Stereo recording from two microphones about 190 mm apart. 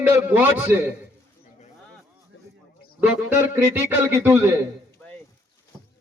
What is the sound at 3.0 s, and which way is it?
A man's voice, 10° right (ahead or behind).